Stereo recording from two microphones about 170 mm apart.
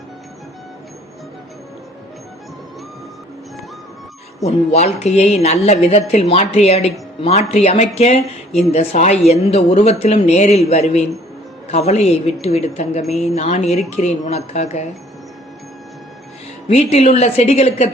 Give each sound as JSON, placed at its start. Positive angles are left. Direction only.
{"t": 4.4, "sound": "a woman's voice", "side_deg": 40}
{"t": 16.6, "sound": "a woman's voice", "side_deg": 40}